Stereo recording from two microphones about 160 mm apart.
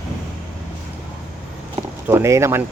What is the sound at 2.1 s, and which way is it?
Speech, 15° right (ahead or behind).